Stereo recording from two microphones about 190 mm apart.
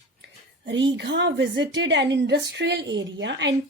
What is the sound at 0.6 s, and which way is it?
A woman's voice, 70° right (ahead or behind).